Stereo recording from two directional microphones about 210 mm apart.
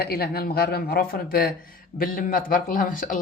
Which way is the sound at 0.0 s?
45° left (ahead or behind).